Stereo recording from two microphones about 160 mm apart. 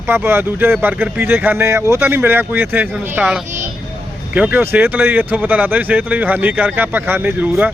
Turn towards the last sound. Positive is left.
turn(degrees=-10)  # may be behind; listen again after turning